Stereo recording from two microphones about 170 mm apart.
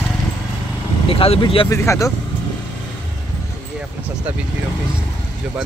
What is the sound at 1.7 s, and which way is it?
Speech, 20° left (ahead or behind).